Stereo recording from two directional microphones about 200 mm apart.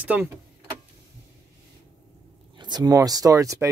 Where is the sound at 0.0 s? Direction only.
10° right (ahead or behind).